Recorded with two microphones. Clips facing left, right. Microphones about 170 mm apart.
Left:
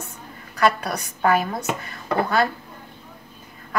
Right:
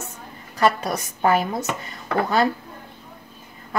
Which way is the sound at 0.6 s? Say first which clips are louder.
Right 1 dB; 25° right (ahead or behind).